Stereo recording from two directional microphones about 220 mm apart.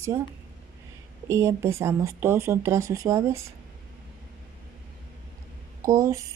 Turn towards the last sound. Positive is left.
turn(degrees=-15)  # may be behind; listen again after turning